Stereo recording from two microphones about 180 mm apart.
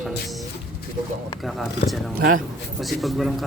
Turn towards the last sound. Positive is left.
turn(degrees=0)  # may be behind; listen again after turning